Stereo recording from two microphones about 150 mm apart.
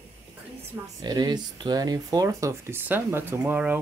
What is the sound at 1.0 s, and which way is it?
Speech, 25° right (ahead or behind).